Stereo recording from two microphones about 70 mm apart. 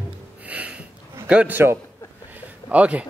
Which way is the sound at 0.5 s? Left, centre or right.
Centre.